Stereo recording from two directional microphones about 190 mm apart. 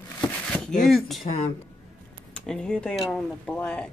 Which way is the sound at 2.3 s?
5° left (ahead or behind).